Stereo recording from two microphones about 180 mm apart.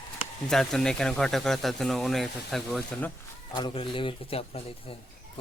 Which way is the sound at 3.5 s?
25° left (ahead or behind).